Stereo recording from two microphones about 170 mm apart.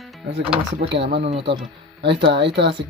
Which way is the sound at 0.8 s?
80° right.